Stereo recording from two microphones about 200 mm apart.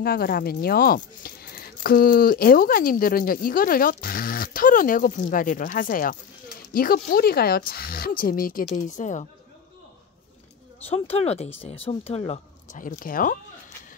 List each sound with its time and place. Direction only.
0.0 s speech: 45° left (ahead or behind)
10.9 s speech: 30° left (ahead or behind)